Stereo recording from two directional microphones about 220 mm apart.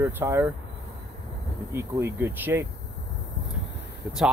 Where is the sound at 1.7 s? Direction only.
10° right (ahead or behind).